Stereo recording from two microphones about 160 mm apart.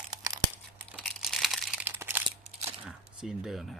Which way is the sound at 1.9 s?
15° right (ahead or behind).